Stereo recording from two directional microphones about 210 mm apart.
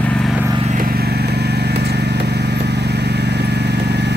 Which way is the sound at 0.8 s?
50° right (ahead or behind).